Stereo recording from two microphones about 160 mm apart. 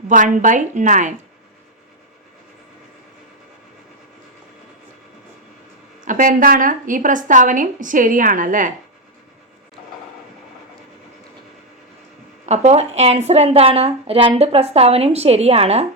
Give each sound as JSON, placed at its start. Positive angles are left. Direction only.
{"t": 0.1, "sound": "a woman's voice", "side_deg": -55}
{"t": 6.1, "sound": "a woman's voice", "side_deg": -55}
{"t": 12.5, "sound": "a woman's voice", "side_deg": -40}